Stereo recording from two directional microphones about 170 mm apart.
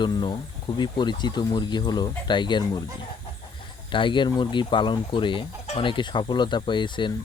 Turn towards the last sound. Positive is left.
turn(degrees=25)  # may be behind; listen again after turning